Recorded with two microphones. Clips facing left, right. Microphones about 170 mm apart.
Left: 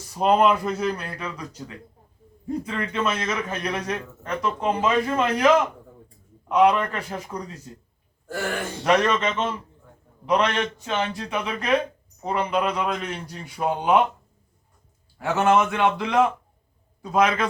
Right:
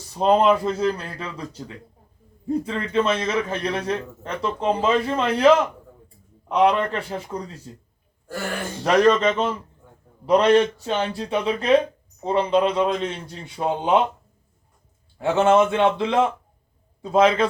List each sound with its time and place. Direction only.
0.2 s a man's voice: 30° right (ahead or behind)
6.5 s a man's voice: 30° right (ahead or behind)
8.8 s a man's voice: 35° right (ahead or behind)
15.2 s a man's voice: 25° right (ahead or behind)